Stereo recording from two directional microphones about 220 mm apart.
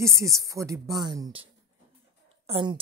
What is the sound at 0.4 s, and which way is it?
A woman's voice, 15° right (ahead or behind).